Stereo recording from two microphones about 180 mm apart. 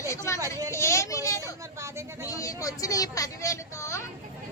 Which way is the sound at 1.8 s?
15° right (ahead or behind).